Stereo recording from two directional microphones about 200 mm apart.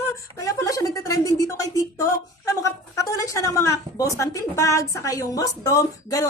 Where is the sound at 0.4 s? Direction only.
15° left (ahead or behind).